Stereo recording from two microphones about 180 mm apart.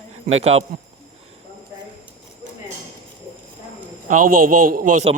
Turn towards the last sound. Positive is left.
turn(degrees=-50)  # may be behind; listen again after turning